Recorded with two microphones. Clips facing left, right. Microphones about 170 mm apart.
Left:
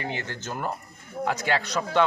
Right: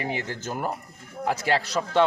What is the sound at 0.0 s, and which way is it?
Speech, 5° right (ahead or behind).